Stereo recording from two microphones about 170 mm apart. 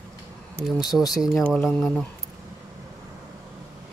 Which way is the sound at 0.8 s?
20° left (ahead or behind).